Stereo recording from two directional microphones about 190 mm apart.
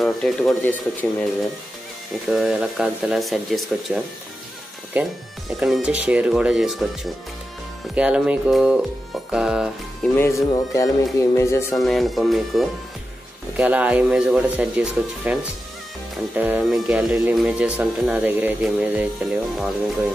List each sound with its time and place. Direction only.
0.0 s speech: centre (ahead or behind)
2.2 s speech: centre (ahead or behind)
10.1 s music: 15° left (ahead or behind)
11.7 s speech: centre (ahead or behind)
16.3 s speech: 10° right (ahead or behind)